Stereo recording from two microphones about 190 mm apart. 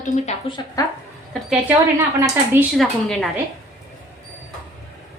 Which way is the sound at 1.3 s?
5° right (ahead or behind).